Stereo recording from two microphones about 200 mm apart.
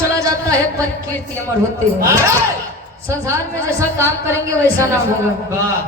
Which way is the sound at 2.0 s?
15° right (ahead or behind).